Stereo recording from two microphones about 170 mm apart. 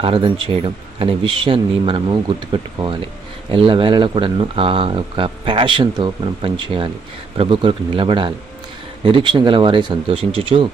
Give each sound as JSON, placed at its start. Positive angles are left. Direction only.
{"t": 0.0, "sound": "speech", "side_deg": -30}